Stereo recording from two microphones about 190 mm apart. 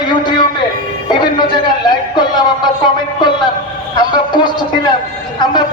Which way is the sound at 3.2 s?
25° left (ahead or behind).